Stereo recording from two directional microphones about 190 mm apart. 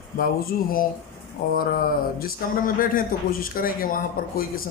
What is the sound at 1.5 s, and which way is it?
Speech, 50° left (ahead or behind).